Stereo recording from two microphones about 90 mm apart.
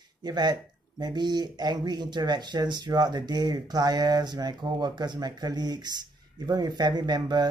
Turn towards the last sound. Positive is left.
turn(degrees=-50)  # may be behind; listen again after turning